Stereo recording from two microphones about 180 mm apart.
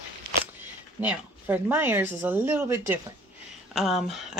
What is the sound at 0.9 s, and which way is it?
Speech, 10° right (ahead or behind).